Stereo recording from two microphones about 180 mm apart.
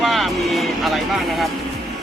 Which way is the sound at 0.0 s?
Centre (ahead or behind).